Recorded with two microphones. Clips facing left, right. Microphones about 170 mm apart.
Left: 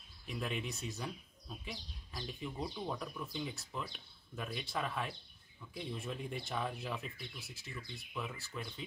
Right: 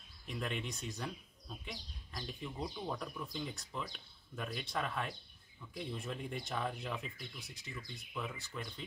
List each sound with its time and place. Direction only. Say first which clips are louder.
0.3 s speech: left 1 dB; centre (ahead or behind)